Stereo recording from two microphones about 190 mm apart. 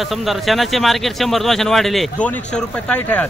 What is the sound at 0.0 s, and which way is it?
Speech, centre (ahead or behind).